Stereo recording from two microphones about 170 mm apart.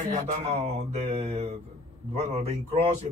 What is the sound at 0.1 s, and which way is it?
A man's voice, 40° right (ahead or behind).